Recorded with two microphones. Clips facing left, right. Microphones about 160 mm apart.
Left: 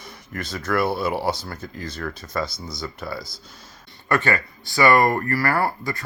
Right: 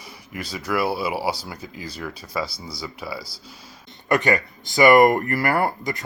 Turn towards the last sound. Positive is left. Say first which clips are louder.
# right 1 dB
turn(degrees=-20)  # may be behind; listen again after turning